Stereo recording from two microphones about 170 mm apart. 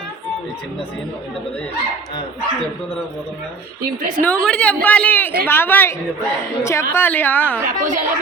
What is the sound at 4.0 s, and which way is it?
Speech, 55° right (ahead or behind).